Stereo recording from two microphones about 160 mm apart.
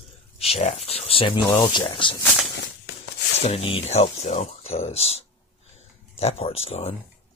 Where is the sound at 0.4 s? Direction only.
45° left (ahead or behind).